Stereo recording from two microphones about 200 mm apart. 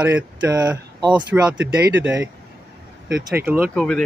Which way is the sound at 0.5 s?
20° right (ahead or behind).